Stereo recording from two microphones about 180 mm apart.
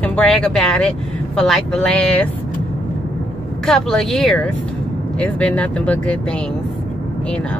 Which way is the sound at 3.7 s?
Centre (ahead or behind).